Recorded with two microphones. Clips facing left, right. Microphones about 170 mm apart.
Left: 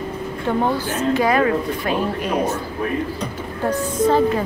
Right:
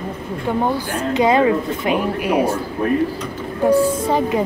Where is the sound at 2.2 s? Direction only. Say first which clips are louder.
Right 3 dB; 10° right (ahead or behind).